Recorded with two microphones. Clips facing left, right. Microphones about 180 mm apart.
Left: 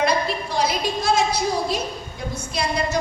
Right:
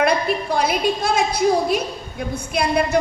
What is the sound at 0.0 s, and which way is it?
A woman's voice, 55° right (ahead or behind).